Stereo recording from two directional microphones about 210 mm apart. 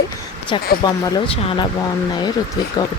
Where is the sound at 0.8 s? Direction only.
20° left (ahead or behind).